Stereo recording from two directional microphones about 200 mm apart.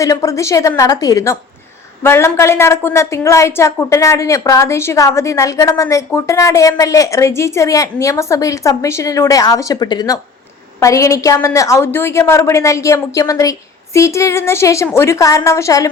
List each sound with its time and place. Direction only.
0.0 s a woman's voice: 15° left (ahead or behind)